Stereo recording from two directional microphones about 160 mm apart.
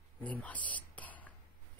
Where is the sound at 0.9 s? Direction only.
10° left (ahead or behind).